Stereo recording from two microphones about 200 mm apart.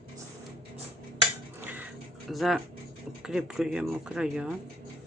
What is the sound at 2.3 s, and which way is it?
Speech, centre (ahead or behind).